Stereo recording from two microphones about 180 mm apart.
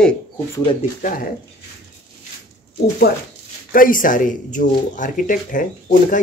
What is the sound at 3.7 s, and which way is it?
Speech, 50° left (ahead or behind).